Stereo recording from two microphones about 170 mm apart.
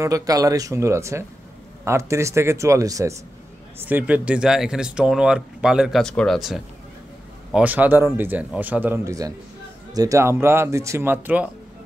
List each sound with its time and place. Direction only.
0.0 s a man's voice: 20° right (ahead or behind)